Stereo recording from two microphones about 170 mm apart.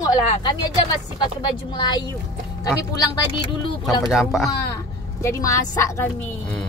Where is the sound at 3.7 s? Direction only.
20° left (ahead or behind).